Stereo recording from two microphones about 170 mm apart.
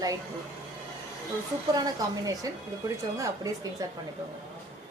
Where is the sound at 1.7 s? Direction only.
20° right (ahead or behind).